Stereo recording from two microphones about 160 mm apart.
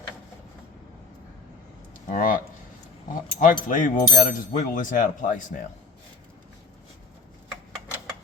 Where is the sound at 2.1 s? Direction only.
55° left (ahead or behind).